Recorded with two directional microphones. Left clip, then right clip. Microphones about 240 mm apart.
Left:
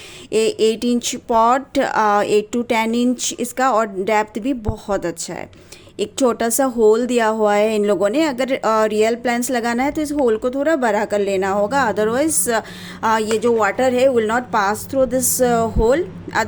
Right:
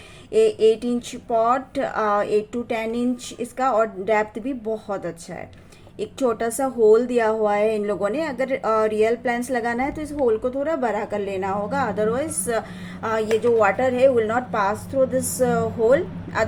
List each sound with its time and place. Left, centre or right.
0.3 s a woman's voice: left